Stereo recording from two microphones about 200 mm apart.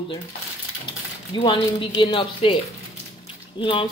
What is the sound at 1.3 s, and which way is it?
Speech, 25° left (ahead or behind).